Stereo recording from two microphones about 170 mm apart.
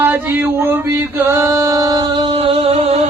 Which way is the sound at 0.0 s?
10° right (ahead or behind).